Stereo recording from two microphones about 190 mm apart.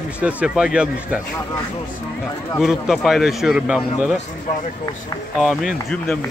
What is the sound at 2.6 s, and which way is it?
Speech, centre (ahead or behind).